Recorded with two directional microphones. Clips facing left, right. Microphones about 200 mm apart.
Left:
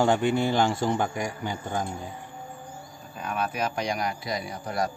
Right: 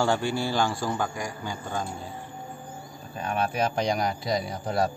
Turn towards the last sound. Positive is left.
turn(degrees=-30)  # may be behind; listen again after turning